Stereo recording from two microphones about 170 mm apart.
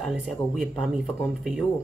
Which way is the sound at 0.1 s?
5° right (ahead or behind).